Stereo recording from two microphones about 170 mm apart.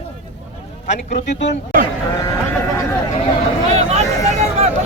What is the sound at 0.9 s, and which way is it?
Speech, 45° left (ahead or behind).